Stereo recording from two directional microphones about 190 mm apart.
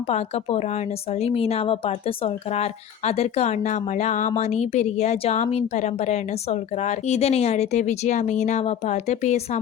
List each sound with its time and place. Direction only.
1.2 s speech: 30° left (ahead or behind)